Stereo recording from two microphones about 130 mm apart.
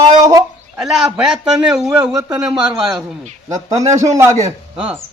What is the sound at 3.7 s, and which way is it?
Speech, 25° right (ahead or behind).